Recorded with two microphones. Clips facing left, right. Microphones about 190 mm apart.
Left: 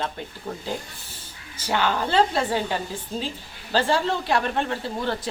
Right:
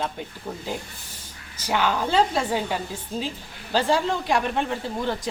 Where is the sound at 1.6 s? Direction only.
10° right (ahead or behind).